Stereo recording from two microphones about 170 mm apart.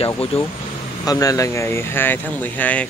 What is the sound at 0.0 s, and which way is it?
Speech, 35° left (ahead or behind).